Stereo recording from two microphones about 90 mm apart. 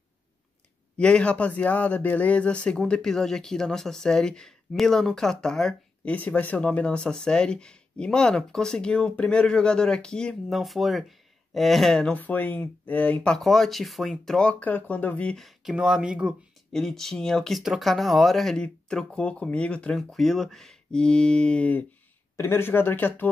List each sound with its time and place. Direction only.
0.9 s speech: 10° left (ahead or behind)
12.1 s speech: 20° left (ahead or behind)
13.4 s speech: centre (ahead or behind); by 15.3 s 15° left (ahead or behind)
15.3 s speech: centre (ahead or behind)
15.7 s speech: 10° right (ahead or behind)
16.7 s speech: 5° left (ahead or behind)
20.0 s speech: 5° left (ahead or behind)
22.4 s speech: 25° left (ahead or behind)